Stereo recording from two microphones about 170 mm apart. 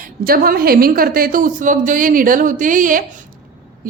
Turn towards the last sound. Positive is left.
turn(degrees=-50)  # may be behind; listen again after turning